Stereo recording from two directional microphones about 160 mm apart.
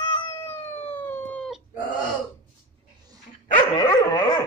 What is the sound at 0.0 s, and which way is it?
Cat, 30° left (ahead or behind).